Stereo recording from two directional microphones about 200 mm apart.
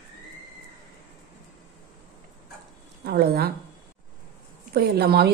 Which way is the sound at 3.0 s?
50° right (ahead or behind).